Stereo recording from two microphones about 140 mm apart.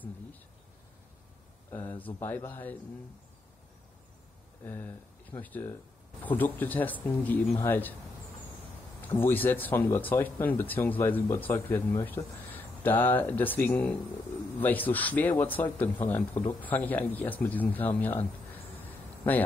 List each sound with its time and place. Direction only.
1.7 s speech: 15° left (ahead or behind)
4.6 s speech: 15° left (ahead or behind)
9.0 s speech: 15° left (ahead or behind)
18.9 s a sound: 10° left (ahead or behind)